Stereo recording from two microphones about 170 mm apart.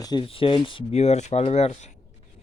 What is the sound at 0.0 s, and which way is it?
Speech, 25° left (ahead or behind).